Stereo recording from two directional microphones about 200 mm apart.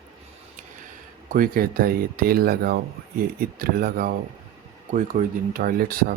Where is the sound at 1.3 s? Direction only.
45° right (ahead or behind).